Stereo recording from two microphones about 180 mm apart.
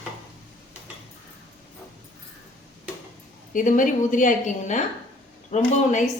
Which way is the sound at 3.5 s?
45° left (ahead or behind).